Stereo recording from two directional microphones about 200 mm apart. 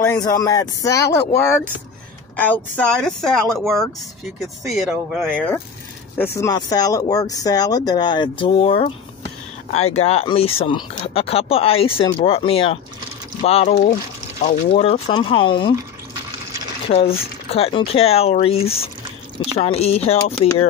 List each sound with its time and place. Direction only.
0.0 s speech: 15° left (ahead or behind); by 13.7 s 30° left (ahead or behind)
13.8 s speech: 45° left (ahead or behind); by 15.7 s 25° left (ahead or behind)
16.9 s speech: 30° left (ahead or behind)